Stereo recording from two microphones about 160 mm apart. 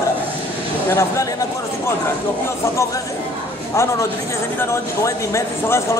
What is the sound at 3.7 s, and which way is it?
Speech, 20° left (ahead or behind).